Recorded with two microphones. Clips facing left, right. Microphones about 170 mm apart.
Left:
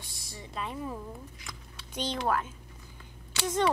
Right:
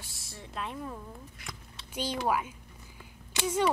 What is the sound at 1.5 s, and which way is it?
A woman's voice, 10° right (ahead or behind).